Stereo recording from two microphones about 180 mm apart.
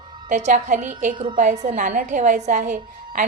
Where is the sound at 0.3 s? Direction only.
40° right (ahead or behind).